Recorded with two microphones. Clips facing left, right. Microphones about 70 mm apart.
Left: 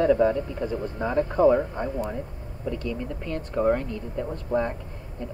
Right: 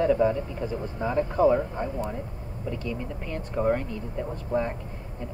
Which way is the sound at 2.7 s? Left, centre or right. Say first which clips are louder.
Left 1 dB; centre.